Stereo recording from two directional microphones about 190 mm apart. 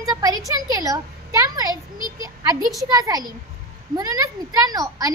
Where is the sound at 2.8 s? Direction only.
20° right (ahead or behind).